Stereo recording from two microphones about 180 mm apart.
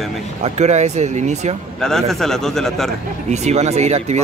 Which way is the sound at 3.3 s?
40° right (ahead or behind).